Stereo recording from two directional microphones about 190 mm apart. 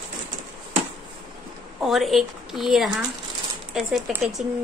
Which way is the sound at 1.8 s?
Centre (ahead or behind).